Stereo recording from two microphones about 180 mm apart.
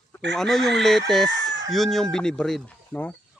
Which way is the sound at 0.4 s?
Centre (ahead or behind).